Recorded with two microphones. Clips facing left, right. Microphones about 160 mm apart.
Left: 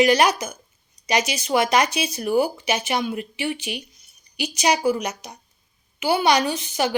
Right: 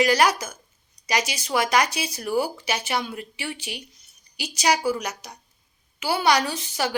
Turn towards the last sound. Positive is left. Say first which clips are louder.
# left 4 dB
turn(degrees=20)  # may be behind; listen again after turning